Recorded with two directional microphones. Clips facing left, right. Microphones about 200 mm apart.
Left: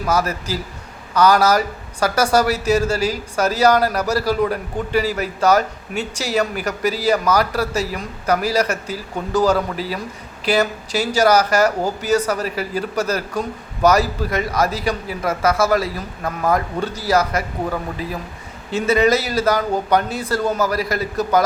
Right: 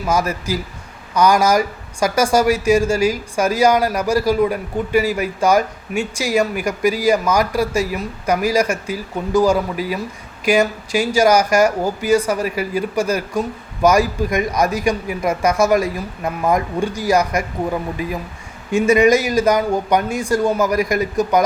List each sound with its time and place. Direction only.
0.0 s speech: 10° right (ahead or behind)